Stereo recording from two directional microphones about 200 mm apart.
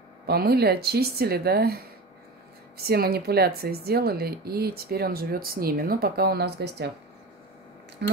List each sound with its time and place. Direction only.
0.3 s speech: 50° right (ahead or behind)
2.8 s speech: 50° right (ahead or behind)
8.0 s speech: 60° right (ahead or behind)